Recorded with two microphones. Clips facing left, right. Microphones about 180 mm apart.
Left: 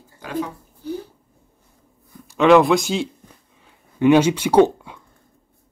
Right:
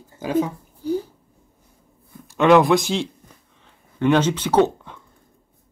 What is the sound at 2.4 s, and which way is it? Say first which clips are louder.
Speech: left 1 dB; centre (ahead or behind).